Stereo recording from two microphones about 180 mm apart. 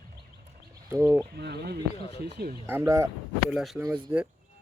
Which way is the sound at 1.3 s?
65° right (ahead or behind).